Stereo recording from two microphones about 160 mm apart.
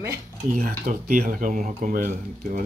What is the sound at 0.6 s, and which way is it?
Speech, 50° right (ahead or behind).